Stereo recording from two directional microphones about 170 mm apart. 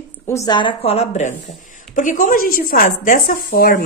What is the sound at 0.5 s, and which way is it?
Speech, 30° left (ahead or behind).